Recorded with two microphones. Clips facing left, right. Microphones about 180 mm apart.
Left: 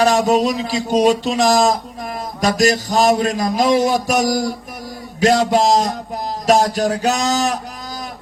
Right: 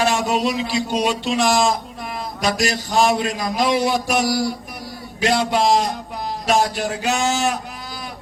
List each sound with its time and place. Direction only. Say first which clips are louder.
0.0 s a man's voice: left 5 dB; 40° left (ahead or behind)